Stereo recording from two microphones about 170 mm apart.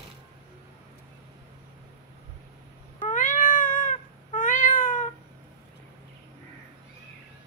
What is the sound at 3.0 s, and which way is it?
Cat, 50° left (ahead or behind).